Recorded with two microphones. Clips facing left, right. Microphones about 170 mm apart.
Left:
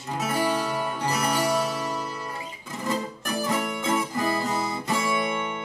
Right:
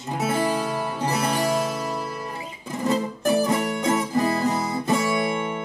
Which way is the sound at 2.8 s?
20° right (ahead or behind).